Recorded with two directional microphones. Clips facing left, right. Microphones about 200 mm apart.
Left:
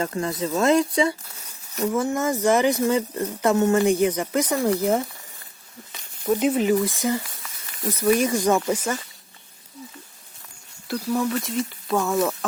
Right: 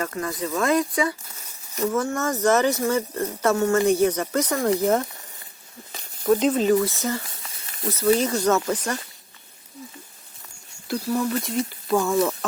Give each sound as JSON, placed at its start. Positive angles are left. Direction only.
{"t": 0.0, "sound": "speech", "side_deg": 25}
{"t": 1.8, "sound": "speech", "side_deg": 15}
{"t": 6.2, "sound": "speech", "side_deg": 5}
{"t": 8.2, "sound": "speech", "side_deg": 10}
{"t": 10.8, "sound": "speech", "side_deg": 0}